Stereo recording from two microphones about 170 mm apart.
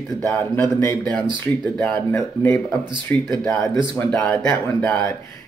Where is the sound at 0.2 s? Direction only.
10° left (ahead or behind).